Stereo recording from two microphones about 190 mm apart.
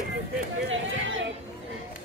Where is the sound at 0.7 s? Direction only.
90° right.